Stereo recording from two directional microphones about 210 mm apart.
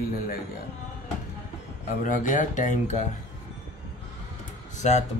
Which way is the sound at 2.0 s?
40° left (ahead or behind).